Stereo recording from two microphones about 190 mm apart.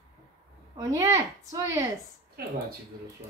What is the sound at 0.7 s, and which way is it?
Speech, 20° right (ahead or behind).